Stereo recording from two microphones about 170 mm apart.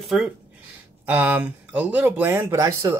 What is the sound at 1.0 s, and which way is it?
Speech, 10° right (ahead or behind).